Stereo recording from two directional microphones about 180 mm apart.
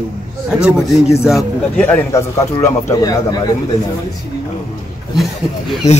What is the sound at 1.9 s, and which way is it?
Speech, 15° left (ahead or behind).